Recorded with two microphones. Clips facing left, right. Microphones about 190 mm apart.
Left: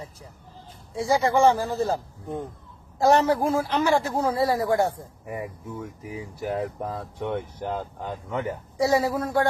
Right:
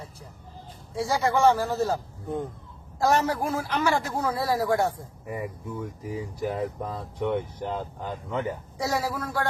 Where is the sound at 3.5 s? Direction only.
15° left (ahead or behind).